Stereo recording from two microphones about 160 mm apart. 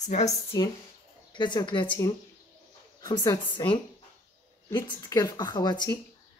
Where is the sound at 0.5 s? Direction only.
25° left (ahead or behind).